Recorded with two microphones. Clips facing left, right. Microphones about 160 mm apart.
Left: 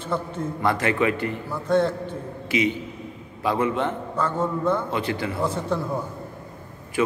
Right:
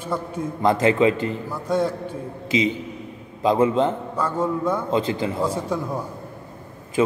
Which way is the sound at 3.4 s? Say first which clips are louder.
Right 5 dB; 25° right (ahead or behind).